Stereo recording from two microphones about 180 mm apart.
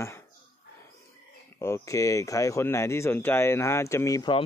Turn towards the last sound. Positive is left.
turn(degrees=20)  # may be behind; listen again after turning